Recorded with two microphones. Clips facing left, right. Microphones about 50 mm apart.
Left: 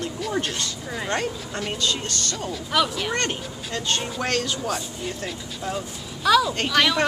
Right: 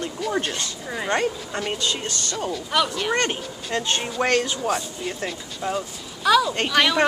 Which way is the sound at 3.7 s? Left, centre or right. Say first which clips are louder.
Right 3 dB; centre.